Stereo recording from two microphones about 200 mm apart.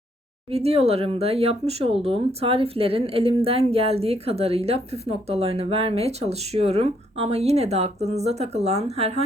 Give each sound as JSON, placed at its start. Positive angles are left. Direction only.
{"t": 0.5, "sound": "speech", "side_deg": -30}